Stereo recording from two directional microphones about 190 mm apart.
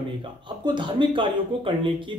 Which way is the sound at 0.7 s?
25° right (ahead or behind).